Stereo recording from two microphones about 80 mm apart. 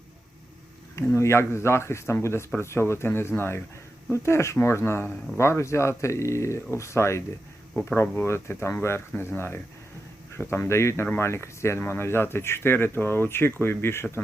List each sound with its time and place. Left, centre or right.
1.1 s speech: left
10.3 s speech: left